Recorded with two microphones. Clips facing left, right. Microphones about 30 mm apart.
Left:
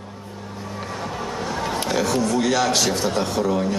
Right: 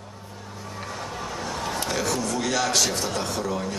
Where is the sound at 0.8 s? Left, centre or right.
Centre.